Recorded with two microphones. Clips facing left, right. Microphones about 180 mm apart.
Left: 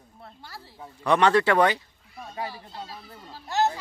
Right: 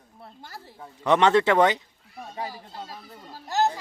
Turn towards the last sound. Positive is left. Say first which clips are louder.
# right 1 dB
turn(degrees=-40)  # may be behind; listen again after turning